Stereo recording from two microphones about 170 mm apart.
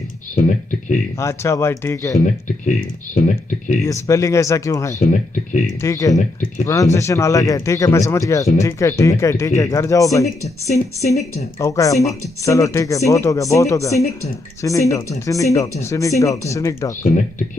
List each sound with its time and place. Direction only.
0.4 s speech: 50° left (ahead or behind)
1.2 s speech: 15° left (ahead or behind)
3.8 s speech: 20° left (ahead or behind)
4.9 s speech: 45° left (ahead or behind)
5.8 s speech: 20° left (ahead or behind)
10.2 s speech: 40° left (ahead or behind)
11.6 s speech: 20° left (ahead or behind)